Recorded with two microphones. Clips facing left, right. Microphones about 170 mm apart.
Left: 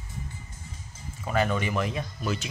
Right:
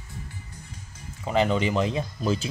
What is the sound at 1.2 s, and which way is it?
Mantra, 20° right (ahead or behind).